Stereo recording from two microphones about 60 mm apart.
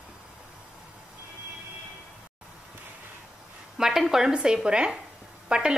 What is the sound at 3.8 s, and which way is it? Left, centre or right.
Speech, centre.